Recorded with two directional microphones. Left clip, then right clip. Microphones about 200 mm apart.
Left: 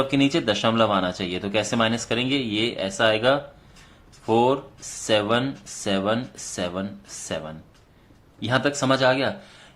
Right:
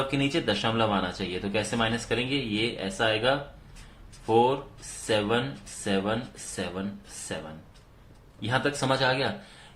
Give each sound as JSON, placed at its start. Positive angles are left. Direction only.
{"t": 0.1, "sound": "speech", "side_deg": 30}
{"t": 8.4, "sound": "speech", "side_deg": 35}